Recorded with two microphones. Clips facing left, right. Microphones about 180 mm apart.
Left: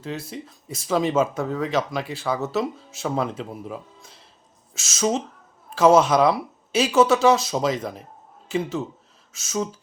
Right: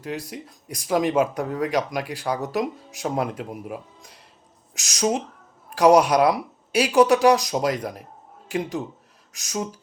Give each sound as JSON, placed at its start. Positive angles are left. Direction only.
{"t": 0.0, "sound": "speech", "side_deg": -15}